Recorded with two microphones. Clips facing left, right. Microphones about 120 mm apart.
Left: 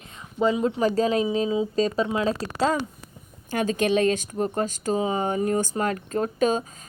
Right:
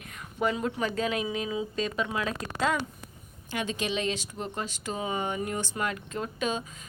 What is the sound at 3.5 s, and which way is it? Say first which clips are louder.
A woman's voice: left 8 dB; 45° left (ahead or behind).